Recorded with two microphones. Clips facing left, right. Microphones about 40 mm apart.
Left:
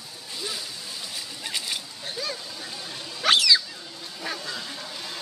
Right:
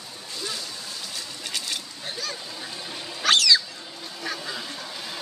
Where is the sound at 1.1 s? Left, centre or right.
Centre.